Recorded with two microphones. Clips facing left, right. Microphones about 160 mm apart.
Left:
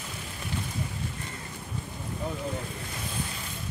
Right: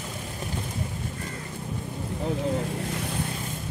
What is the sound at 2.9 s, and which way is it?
Vehicle, 65° right (ahead or behind).